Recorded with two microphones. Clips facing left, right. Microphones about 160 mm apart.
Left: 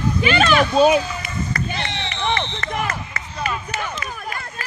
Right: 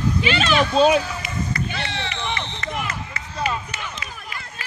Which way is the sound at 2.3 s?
50° left (ahead or behind).